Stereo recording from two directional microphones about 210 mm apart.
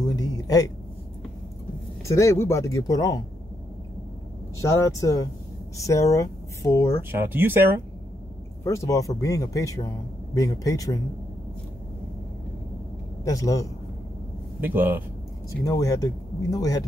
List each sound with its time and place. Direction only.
0.0 s a sound: 20° left (ahead or behind)
2.0 s speech: 15° left (ahead or behind)
4.6 s speech: 15° left (ahead or behind)
7.1 s speech: 10° right (ahead or behind)
8.6 s speech: 15° left (ahead or behind)
13.2 s speech: 15° left (ahead or behind)
14.6 s speech: 10° right (ahead or behind)
15.6 s speech: 15° left (ahead or behind)